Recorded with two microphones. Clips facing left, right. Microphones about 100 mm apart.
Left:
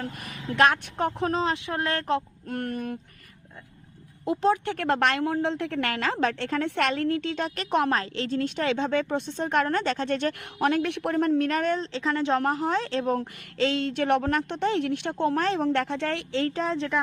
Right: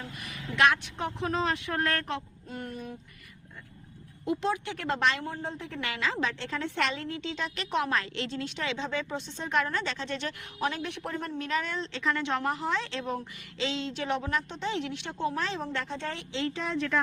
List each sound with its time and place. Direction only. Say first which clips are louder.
0.0 s a woman's voice: left 6 dB; 45° left (ahead or behind)
1.3 s speech: left 3 dB; 25° left (ahead or behind)
2.5 s a woman's voice: left 8 dB; 60° left (ahead or behind)
4.3 s a woman's voice: left 6 dB; 40° left (ahead or behind)
10.4 s a woman's voice: left 8 dB; 65° left (ahead or behind); by 12.4 s 30° left (ahead or behind)
12.5 s a woman's voice: left 5 dB; 45° left (ahead or behind)
13.6 s a woman's voice: left 7 dB; 55° left (ahead or behind); by 16.2 s 70° left (ahead or behind)
16.3 s speech: left 3 dB; 45° left (ahead or behind)